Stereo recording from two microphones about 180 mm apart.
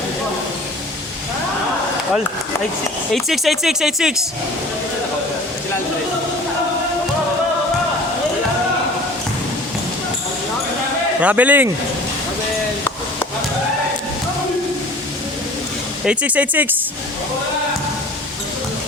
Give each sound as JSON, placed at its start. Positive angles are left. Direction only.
{"t": 3.1, "sound": "speech", "side_deg": 0}
{"t": 11.2, "sound": "speech", "side_deg": -10}
{"t": 16.0, "sound": "speech", "side_deg": -10}